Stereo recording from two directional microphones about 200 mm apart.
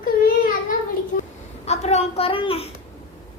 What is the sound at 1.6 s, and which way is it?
A child's voice, 35° left (ahead or behind).